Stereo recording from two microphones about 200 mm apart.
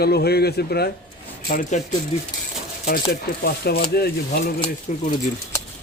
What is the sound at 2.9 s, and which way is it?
Speech, 50° left (ahead or behind).